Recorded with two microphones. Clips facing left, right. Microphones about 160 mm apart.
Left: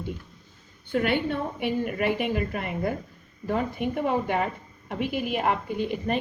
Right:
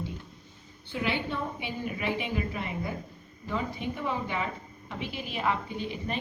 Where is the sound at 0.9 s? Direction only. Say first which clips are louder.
Left 6 dB; 55° left (ahead or behind).